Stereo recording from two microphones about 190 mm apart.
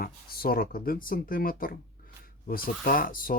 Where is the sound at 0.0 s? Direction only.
50° left (ahead or behind).